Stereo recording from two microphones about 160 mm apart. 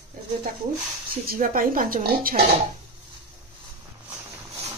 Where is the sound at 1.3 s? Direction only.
60° right (ahead or behind).